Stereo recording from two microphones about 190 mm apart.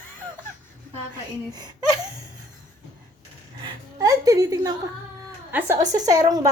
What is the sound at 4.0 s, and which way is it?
A woman's voice, 20° right (ahead or behind).